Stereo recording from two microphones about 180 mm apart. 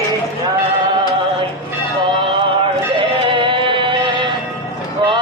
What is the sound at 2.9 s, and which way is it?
Music, 30° right (ahead or behind).